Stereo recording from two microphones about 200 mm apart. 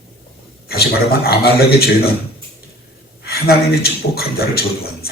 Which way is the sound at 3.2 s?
50° left (ahead or behind).